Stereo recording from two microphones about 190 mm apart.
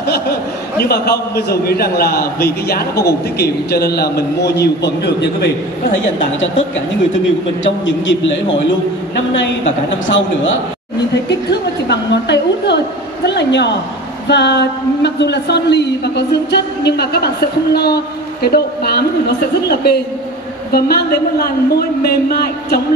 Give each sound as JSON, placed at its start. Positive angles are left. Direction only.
{"t": 0.7, "sound": "speech", "side_deg": 55}
{"t": 7.6, "sound": "a man's voice", "side_deg": 75}
{"t": 10.0, "sound": "a man's voice", "side_deg": 85}
{"t": 11.9, "sound": "speech", "side_deg": 65}